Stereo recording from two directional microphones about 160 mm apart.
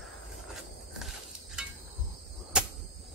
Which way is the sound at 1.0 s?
Centre (ahead or behind).